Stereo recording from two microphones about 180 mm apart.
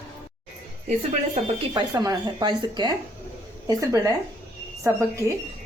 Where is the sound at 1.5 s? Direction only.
25° right (ahead or behind).